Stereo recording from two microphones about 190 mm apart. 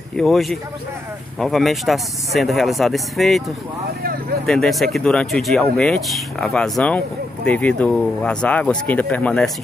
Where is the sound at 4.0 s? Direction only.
50° right (ahead or behind).